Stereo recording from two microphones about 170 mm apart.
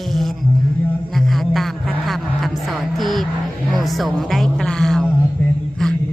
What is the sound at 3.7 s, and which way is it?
Music, centre (ahead or behind).